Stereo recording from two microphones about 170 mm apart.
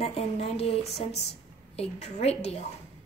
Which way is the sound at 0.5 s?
40° left (ahead or behind).